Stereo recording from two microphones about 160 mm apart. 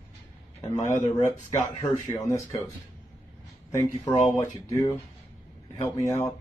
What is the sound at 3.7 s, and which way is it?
Speech, 20° left (ahead or behind).